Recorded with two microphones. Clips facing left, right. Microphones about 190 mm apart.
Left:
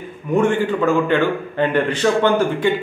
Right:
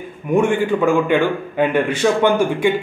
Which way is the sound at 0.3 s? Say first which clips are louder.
Right 1 dB; 10° right (ahead or behind).